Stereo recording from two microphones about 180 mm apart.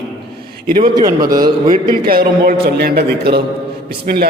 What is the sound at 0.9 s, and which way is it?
Speech, 20° right (ahead or behind).